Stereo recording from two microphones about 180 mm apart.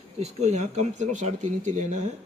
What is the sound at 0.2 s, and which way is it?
Speech, 35° right (ahead or behind).